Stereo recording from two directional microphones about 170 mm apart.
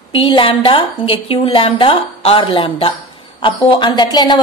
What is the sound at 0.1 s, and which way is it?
A woman's voice, 30° left (ahead or behind).